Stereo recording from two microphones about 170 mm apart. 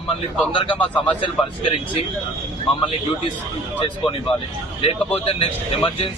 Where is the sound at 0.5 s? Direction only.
30° left (ahead or behind).